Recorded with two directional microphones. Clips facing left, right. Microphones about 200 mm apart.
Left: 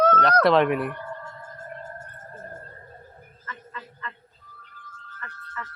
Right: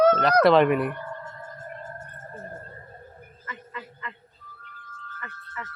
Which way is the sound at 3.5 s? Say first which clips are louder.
Right 1 dB; 15° right (ahead or behind).